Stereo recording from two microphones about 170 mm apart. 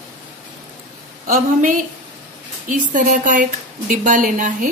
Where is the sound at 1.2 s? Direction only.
50° right (ahead or behind).